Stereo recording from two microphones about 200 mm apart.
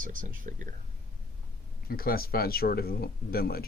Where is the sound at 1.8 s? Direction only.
50° left (ahead or behind).